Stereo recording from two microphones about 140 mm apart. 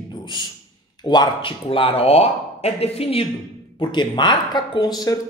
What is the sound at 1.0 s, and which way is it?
A man's voice, 30° left (ahead or behind).